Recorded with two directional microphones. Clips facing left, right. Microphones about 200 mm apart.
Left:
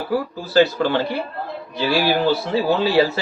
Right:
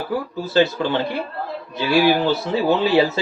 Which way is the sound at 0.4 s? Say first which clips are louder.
Left 1 dB; 25° right (ahead or behind).